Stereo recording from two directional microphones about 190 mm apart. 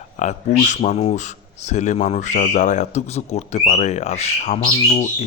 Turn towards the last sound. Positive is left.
turn(degrees=35)  # may be behind; listen again after turning